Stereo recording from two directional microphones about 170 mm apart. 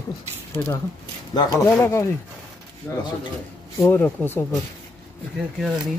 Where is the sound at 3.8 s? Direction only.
15° left (ahead or behind).